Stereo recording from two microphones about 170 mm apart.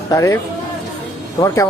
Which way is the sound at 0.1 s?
20° left (ahead or behind).